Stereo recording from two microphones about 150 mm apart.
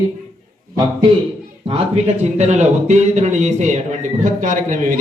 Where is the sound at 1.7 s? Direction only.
40° right (ahead or behind); by 5.0 s 60° right (ahead or behind).